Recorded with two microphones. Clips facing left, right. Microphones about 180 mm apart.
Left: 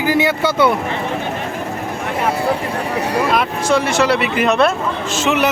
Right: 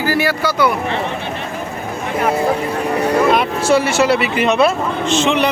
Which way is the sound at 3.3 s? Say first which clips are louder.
Right 2 dB; 5° right (ahead or behind).